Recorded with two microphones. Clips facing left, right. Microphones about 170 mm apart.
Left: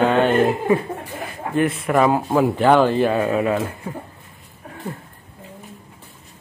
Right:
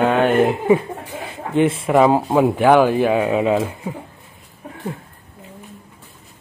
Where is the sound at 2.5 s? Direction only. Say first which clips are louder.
Right 1 dB; 10° right (ahead or behind).